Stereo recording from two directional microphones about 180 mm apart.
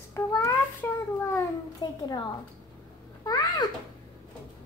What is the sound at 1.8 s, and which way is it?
Speech, 25° left (ahead or behind).